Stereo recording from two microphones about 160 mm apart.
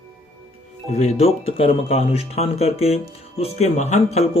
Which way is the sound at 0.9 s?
40° left (ahead or behind).